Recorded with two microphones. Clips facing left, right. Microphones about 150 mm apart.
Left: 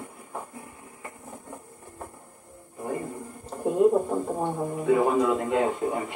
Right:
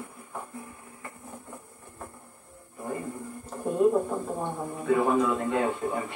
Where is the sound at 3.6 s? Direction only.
15° left (ahead or behind).